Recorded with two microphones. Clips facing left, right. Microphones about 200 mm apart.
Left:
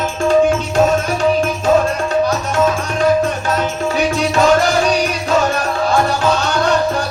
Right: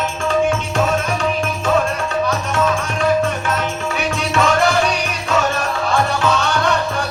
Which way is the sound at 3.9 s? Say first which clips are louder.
Left 4 dB; 35° left (ahead or behind).